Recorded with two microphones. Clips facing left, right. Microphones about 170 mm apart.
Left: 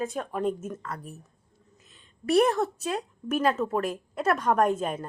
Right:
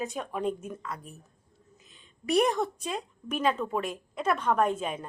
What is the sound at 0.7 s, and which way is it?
Speech, 10° right (ahead or behind).